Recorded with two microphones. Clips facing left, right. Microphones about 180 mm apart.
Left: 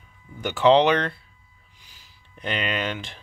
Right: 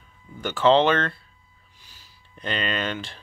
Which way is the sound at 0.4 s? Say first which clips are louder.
Left 1 dB; 15° left (ahead or behind).